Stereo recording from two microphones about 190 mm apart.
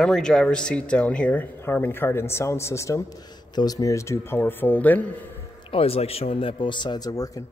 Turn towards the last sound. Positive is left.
turn(degrees=20)  # may be behind; listen again after turning